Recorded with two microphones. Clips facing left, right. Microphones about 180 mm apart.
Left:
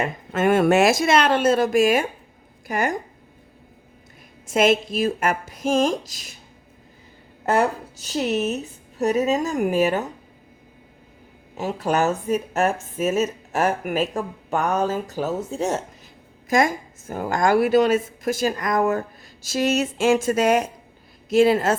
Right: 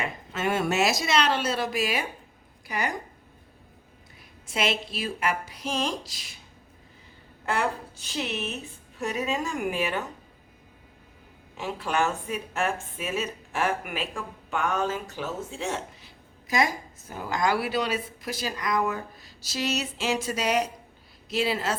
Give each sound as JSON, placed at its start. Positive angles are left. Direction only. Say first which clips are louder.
{"t": 0.0, "sound": "a woman's voice", "louder": "left 8 dB", "side_deg": 50}
{"t": 4.4, "sound": "a woman's voice", "louder": "left 10 dB", "side_deg": 45}
{"t": 7.4, "sound": "speech", "louder": "left 7 dB", "side_deg": 45}
{"t": 11.5, "sound": "a woman's voice", "louder": "left 6 dB", "side_deg": 40}